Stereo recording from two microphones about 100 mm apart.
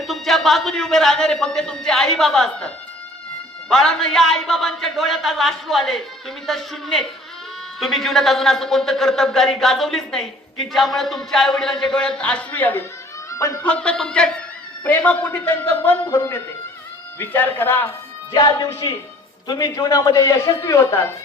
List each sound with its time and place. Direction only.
0.0 s a man's voice: centre (ahead or behind); by 16.0 s 20° left (ahead or behind)
16.0 s a man's voice: 30° left (ahead or behind)
18.3 s a man's voice: 40° left (ahead or behind)